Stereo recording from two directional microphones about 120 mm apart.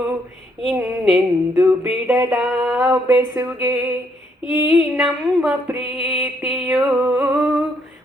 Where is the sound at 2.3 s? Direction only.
10° right (ahead or behind).